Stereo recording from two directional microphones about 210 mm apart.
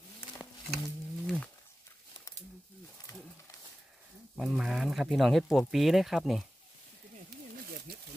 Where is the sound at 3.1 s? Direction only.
15° left (ahead or behind).